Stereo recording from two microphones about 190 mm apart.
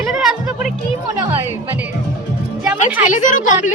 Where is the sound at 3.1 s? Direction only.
45° left (ahead or behind).